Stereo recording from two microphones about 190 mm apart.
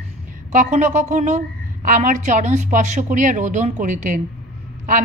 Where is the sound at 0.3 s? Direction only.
40° right (ahead or behind).